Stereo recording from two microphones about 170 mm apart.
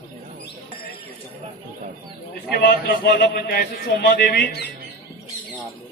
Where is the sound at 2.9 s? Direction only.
65° left (ahead or behind).